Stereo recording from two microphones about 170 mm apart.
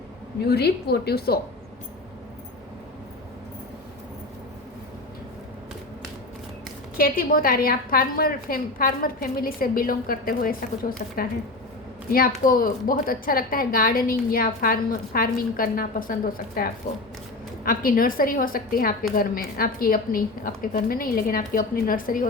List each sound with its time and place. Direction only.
0.4 s a woman's voice: 70° left (ahead or behind)
6.9 s a woman's voice: 60° left (ahead or behind)